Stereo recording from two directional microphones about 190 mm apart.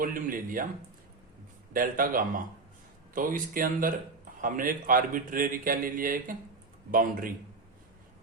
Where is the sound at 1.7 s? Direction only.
45° right (ahead or behind).